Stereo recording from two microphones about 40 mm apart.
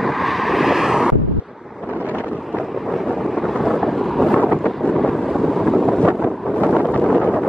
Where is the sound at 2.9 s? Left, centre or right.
Centre.